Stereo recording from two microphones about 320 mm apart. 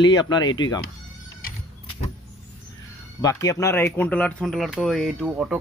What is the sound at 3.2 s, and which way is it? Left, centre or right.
Speech, centre.